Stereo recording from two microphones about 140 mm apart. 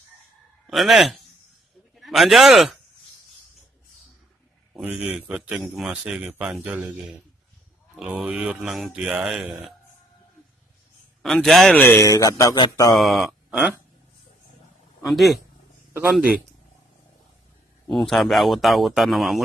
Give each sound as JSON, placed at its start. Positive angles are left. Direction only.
{"t": 0.7, "sound": "a man's voice", "side_deg": 0}
{"t": 4.8, "sound": "a man's voice", "side_deg": -10}
{"t": 7.9, "sound": "speech", "side_deg": 0}
{"t": 11.2, "sound": "speech", "side_deg": 0}
{"t": 11.8, "sound": "speech", "side_deg": 20}
{"t": 12.9, "sound": "speech", "side_deg": 0}
{"t": 15.0, "sound": "speech", "side_deg": 0}
{"t": 15.9, "sound": "a man's voice", "side_deg": -10}
{"t": 17.9, "sound": "speech", "side_deg": 0}